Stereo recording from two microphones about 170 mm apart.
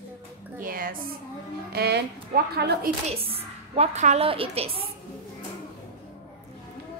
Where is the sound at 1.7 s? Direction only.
70° right (ahead or behind).